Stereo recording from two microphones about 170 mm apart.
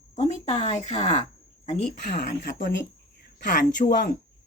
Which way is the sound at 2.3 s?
55° left (ahead or behind).